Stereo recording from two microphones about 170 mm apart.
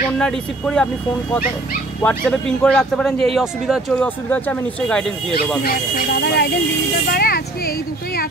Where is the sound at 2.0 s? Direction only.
5° left (ahead or behind).